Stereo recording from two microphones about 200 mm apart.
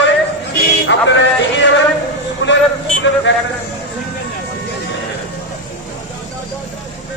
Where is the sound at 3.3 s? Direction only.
65° left (ahead or behind).